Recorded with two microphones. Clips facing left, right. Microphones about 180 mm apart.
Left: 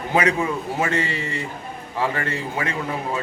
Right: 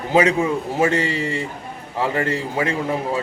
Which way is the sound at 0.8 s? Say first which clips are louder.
Right 6 dB; 30° right (ahead or behind).